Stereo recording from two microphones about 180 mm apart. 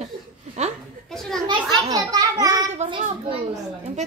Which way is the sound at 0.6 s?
40° right (ahead or behind).